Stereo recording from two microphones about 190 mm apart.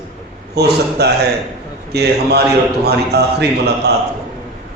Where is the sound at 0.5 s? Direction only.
60° right (ahead or behind).